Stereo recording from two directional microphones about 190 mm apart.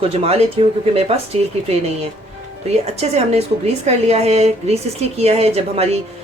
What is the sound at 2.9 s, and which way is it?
Speech, 35° right (ahead or behind).